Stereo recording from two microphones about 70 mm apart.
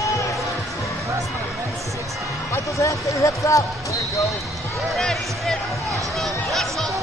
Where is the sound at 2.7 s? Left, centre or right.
Left.